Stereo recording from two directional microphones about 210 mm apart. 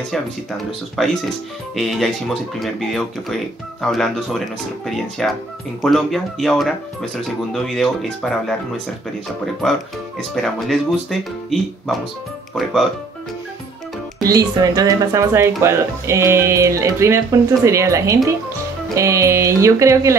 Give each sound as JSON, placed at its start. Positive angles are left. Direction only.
{"t": 1.0, "sound": "speech", "side_deg": 0}
{"t": 9.6, "sound": "speech", "side_deg": 0}
{"t": 14.2, "sound": "speech", "side_deg": -15}